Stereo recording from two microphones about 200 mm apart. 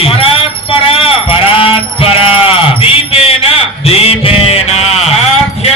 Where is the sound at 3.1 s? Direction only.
30° left (ahead or behind).